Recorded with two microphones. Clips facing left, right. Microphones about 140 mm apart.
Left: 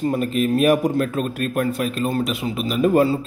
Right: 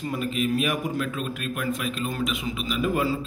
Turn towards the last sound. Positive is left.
turn(degrees=45)  # may be behind; listen again after turning